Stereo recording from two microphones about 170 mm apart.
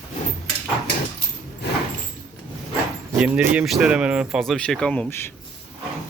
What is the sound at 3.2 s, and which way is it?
Speech, 10° right (ahead or behind).